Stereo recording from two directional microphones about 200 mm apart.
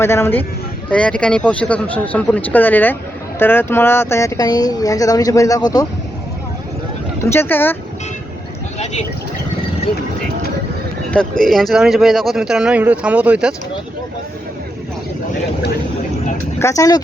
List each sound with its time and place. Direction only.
0.0 s speech: 10° left (ahead or behind)
7.3 s speech: 10° left (ahead or behind)
8.8 s speech: 35° left (ahead or behind)
11.1 s speech: 5° left (ahead or behind)
16.6 s speech: 15° left (ahead or behind)